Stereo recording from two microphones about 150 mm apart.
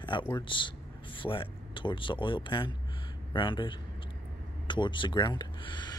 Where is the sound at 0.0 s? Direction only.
30° left (ahead or behind).